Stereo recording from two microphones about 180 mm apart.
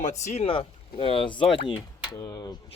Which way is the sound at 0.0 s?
40° left (ahead or behind).